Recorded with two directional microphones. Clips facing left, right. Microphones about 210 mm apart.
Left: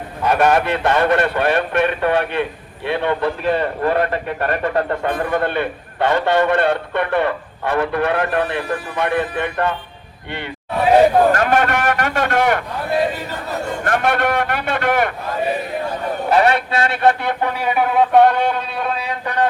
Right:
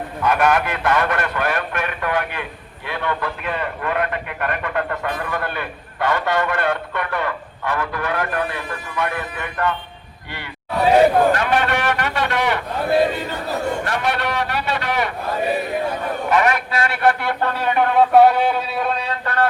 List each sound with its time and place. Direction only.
0.3 s speech: 30° left (ahead or behind)
11.3 s a man's voice: 45° left (ahead or behind)
13.8 s a man's voice: 50° left (ahead or behind)
16.3 s speech: 30° left (ahead or behind); by 19.0 s centre (ahead or behind)
19.0 s a sound: 15° left (ahead or behind)